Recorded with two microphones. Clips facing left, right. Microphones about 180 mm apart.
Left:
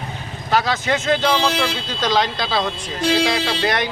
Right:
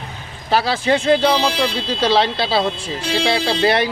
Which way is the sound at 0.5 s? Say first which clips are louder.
Right 3 dB; 30° right (ahead or behind).